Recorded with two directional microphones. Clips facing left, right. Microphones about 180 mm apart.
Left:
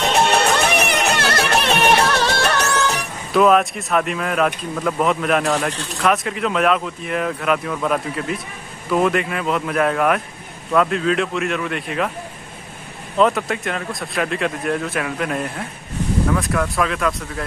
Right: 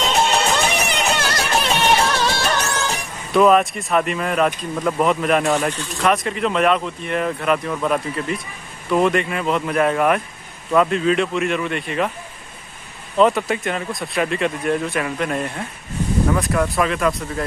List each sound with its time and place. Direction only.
0.2 s music: 65° left (ahead or behind)
3.3 s speech: centre (ahead or behind)
13.2 s speech: centre (ahead or behind)